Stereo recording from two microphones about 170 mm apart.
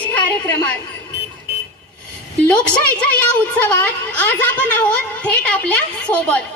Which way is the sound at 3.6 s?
10° left (ahead or behind).